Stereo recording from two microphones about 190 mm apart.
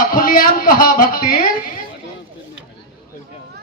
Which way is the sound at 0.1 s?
50° left (ahead or behind).